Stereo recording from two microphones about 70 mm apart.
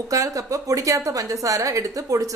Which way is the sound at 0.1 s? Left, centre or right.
Right.